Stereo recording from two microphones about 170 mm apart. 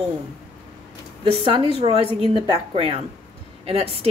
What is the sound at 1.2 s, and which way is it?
Speech, 30° right (ahead or behind).